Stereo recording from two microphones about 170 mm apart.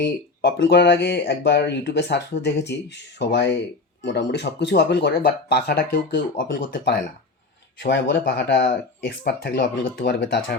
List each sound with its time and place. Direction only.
0.0 s speech: 70° left (ahead or behind)
7.8 s speech: 80° left